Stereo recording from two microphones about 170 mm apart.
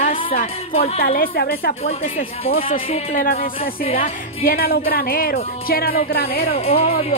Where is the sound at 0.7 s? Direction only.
35° left (ahead or behind).